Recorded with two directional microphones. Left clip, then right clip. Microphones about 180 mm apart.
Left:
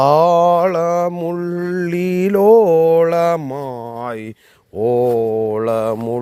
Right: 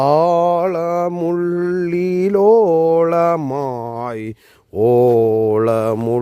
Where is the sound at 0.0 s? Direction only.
25° right (ahead or behind).